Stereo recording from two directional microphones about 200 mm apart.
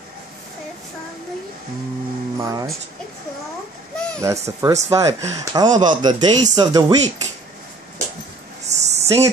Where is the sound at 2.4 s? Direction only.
15° right (ahead or behind).